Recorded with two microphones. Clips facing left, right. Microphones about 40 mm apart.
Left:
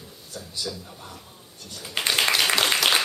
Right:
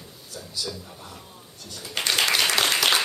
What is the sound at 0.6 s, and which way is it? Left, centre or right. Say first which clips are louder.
Speech: left 1 dB; centre.